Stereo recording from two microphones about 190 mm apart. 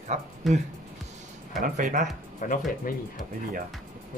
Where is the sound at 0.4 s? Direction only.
Centre (ahead or behind).